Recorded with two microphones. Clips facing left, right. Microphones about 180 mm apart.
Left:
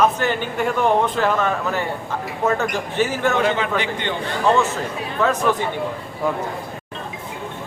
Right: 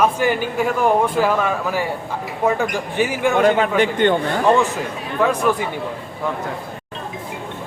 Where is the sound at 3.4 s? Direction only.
45° right (ahead or behind).